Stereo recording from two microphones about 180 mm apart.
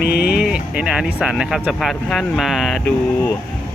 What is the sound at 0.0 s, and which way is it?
Music, 60° left (ahead or behind).